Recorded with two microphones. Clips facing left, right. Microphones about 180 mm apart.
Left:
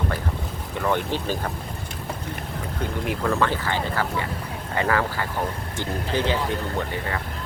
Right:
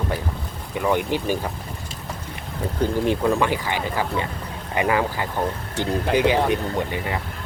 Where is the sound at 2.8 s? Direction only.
30° right (ahead or behind).